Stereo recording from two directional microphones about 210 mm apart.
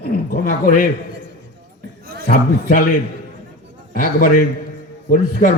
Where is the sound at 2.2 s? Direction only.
40° left (ahead or behind).